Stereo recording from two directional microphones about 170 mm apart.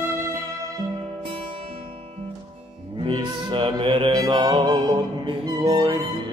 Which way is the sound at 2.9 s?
30° right (ahead or behind).